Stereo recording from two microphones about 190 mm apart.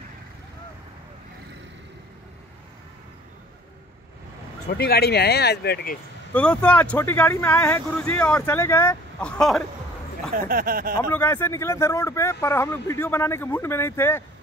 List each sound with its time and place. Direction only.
4.6 s speech: 55° left (ahead or behind)
6.3 s speech: 5° left (ahead or behind)
10.3 s speech: 50° right (ahead or behind)
11.1 s speech: 10° left (ahead or behind)